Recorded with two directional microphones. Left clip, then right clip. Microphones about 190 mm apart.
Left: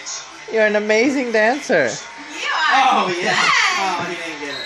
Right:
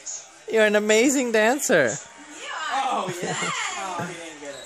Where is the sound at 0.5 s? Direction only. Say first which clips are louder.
Left 3 dB; 60° right (ahead or behind).